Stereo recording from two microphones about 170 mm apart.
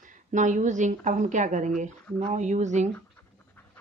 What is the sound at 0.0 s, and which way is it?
A woman's voice, 45° right (ahead or behind).